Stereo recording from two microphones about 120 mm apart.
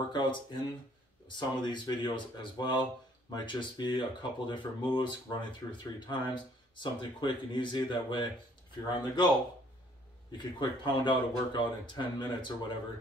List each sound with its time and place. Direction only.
0.1 s speech: 40° left (ahead or behind)
10.3 s speech: 40° left (ahead or behind)